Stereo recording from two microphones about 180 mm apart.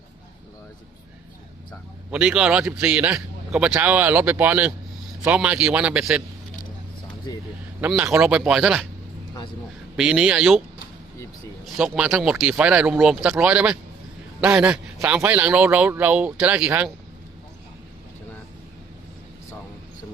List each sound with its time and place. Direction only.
2.0 s a man's voice: 5° right (ahead or behind)
7.3 s speech: 20° left (ahead or behind)
7.8 s speech: 5° right (ahead or behind)
10.0 s speech: 5° right (ahead or behind)
11.6 s a man's voice: 5° right (ahead or behind)